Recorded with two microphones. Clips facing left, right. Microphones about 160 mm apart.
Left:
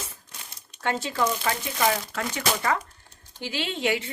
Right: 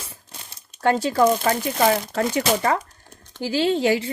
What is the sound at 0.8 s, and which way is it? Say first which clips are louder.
A woman's voice: right 8 dB; 40° right (ahead or behind).